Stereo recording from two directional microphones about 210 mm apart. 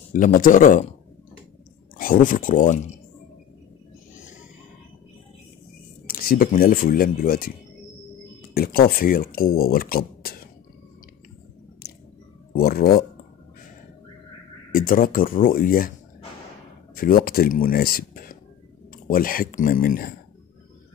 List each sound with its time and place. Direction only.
0.1 s speech: 40° left (ahead or behind)
2.0 s speech: 40° left (ahead or behind)
4.2 s a sound: 35° left (ahead or behind)
6.0 s speech: 45° left (ahead or behind)
8.5 s speech: 45° left (ahead or behind)
11.8 s squish: 50° left (ahead or behind)
12.5 s speech: 45° left (ahead or behind)
14.7 s speech: 40° left (ahead or behind)
16.9 s speech: 45° left (ahead or behind)